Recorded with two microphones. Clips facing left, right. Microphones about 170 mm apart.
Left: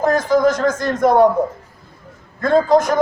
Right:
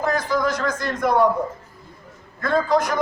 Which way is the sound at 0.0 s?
45° left (ahead or behind).